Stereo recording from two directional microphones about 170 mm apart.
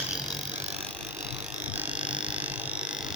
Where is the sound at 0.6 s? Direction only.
35° right (ahead or behind).